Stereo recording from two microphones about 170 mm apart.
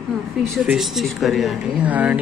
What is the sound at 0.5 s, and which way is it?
Speech, centre (ahead or behind).